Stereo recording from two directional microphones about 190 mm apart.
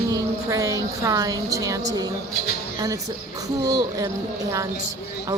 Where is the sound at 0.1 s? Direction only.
15° right (ahead or behind).